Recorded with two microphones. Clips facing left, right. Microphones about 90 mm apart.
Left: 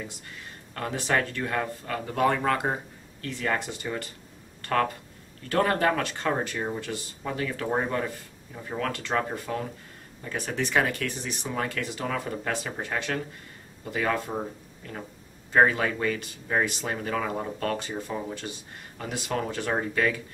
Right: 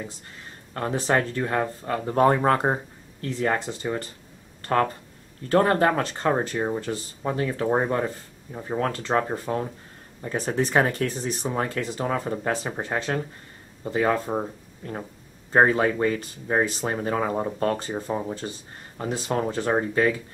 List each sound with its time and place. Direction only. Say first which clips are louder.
0.7 s speech: right 4 dB; 35° right (ahead or behind)